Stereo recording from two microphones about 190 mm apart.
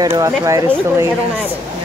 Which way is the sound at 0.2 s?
15° right (ahead or behind).